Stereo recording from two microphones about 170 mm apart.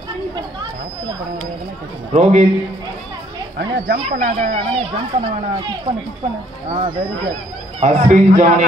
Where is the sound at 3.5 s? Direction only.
80° right.